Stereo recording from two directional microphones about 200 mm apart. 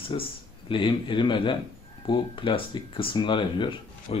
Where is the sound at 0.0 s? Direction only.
25° left (ahead or behind).